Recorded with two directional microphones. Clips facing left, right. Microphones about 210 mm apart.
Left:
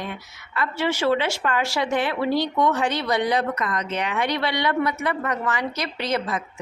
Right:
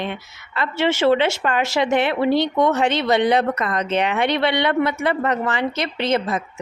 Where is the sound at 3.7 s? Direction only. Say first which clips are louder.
Right 6 dB; 25° right (ahead or behind).